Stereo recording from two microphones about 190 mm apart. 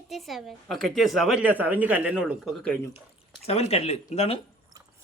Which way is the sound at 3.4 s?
30° left (ahead or behind).